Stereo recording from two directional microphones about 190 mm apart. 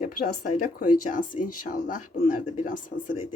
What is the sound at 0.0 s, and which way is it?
Speech, 45° left (ahead or behind).